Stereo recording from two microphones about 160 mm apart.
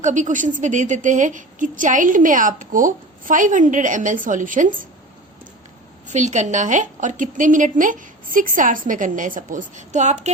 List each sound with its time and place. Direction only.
0.0 s a woman's voice: 50° right (ahead or behind)
6.1 s a woman's voice: 45° right (ahead or behind)